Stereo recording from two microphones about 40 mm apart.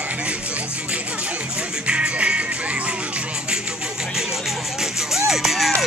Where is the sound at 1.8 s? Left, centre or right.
Right.